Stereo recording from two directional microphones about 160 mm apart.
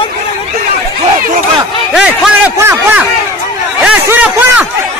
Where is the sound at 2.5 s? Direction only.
20° right (ahead or behind).